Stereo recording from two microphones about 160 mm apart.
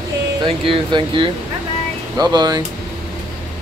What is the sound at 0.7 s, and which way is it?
Speech, 30° right (ahead or behind).